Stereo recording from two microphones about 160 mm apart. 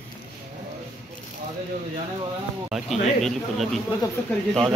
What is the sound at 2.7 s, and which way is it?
Speech, centre (ahead or behind).